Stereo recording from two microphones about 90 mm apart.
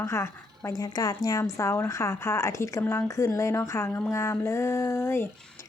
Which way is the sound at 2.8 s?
20° left (ahead or behind).